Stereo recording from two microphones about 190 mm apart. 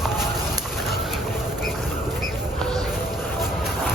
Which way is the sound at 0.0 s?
Centre (ahead or behind).